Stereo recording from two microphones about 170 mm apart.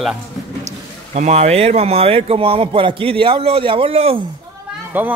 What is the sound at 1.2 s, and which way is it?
Speech, 40° right (ahead or behind).